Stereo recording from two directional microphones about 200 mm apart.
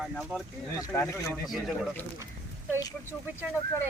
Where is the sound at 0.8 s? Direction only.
15° left (ahead or behind).